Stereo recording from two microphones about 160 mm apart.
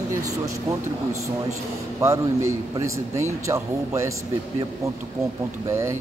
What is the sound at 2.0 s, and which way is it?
A man's voice, 20° right (ahead or behind).